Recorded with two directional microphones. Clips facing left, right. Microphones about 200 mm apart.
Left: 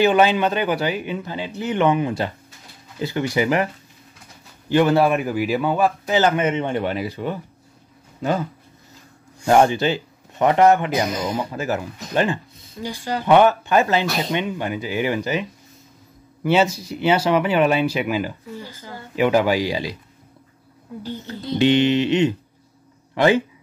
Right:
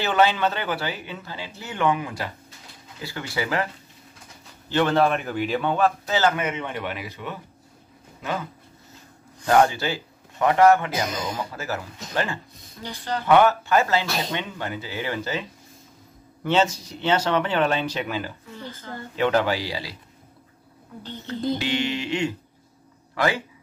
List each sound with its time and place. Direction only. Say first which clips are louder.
0.0 s a man's voice: left 5 dB; 15° left (ahead or behind)
4.6 s a man's voice: left 4 dB; 10° left (ahead or behind); by 7.3 s 35° left (ahead or behind)
9.5 s a man's voice: left 4 dB; 20° left (ahead or behind)
16.4 s a man's voice: left 4 dB; 10° left (ahead or behind)
21.5 s speech: left 10 dB; 20° left (ahead or behind)